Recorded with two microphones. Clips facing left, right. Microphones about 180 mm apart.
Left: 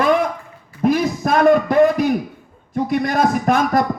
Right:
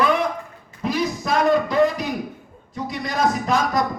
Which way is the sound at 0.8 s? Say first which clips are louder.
Left 7 dB; 55° left (ahead or behind).